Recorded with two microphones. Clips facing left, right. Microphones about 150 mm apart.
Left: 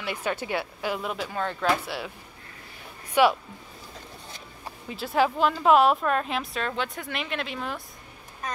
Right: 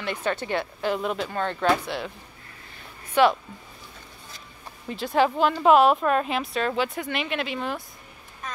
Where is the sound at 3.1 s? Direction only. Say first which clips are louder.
Right 1 dB; 10° left (ahead or behind).